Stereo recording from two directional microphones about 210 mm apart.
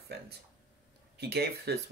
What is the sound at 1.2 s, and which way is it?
Speech, 50° right (ahead or behind).